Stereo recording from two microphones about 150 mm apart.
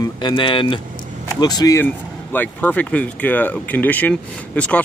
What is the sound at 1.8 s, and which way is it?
Speech, 10° left (ahead or behind).